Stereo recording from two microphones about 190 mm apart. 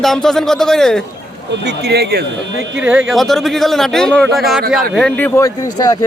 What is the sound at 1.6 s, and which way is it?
Speech, 60° right (ahead or behind).